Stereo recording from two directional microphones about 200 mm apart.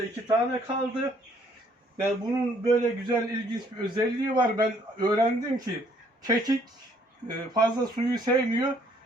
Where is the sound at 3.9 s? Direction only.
20° right (ahead or behind).